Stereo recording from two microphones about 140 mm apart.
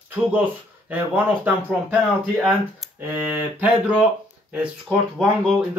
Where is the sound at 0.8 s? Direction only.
10° right (ahead or behind).